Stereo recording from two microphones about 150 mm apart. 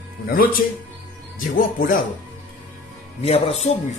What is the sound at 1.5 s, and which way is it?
Speech, 65° left (ahead or behind).